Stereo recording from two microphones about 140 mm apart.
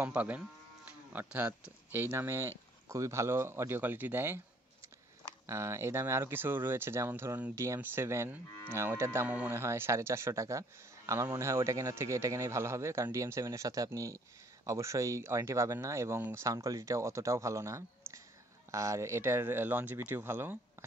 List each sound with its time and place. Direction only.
0.0 s speech: 10° right (ahead or behind)
5.5 s speech: 20° right (ahead or behind)